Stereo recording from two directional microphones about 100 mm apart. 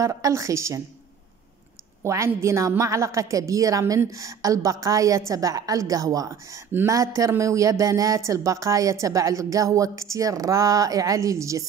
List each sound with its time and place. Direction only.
0.0 s a woman's voice: 35° right (ahead or behind)
2.0 s a woman's voice: 30° right (ahead or behind)